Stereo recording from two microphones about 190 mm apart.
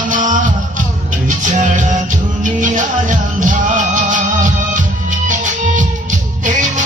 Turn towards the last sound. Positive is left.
turn(degrees=-40)  # may be behind; listen again after turning